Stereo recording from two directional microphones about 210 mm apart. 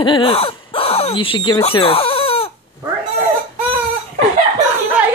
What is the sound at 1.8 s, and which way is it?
Chicken, 25° left (ahead or behind).